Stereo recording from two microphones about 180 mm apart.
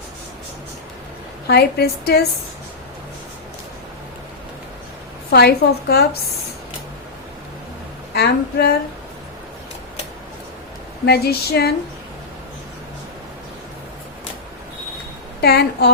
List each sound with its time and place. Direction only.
1.5 s a woman's voice: 60° left (ahead or behind)
5.3 s a woman's voice: 60° left (ahead or behind)
8.1 s a woman's voice: 65° left (ahead or behind)
11.0 s a woman's voice: 60° left (ahead or behind)
15.4 s a woman's voice: 60° left (ahead or behind)